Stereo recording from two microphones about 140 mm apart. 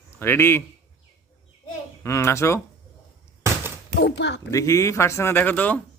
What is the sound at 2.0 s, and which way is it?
Speech, 20° left (ahead or behind).